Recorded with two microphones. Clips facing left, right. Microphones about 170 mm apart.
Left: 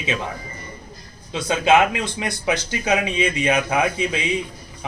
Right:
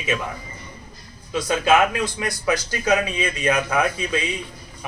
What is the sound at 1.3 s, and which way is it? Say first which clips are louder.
Speech: left 1 dB; 25° left (ahead or behind).